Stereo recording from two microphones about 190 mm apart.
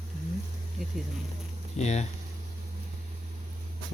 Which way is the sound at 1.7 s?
35° left (ahead or behind).